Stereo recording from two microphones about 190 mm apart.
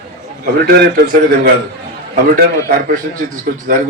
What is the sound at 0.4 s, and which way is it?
Speech, 55° right (ahead or behind).